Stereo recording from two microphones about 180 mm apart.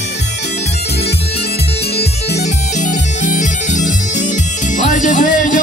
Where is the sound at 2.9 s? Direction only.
45° left (ahead or behind).